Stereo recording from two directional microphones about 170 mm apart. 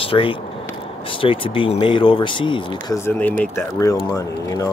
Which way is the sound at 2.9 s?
10° left (ahead or behind).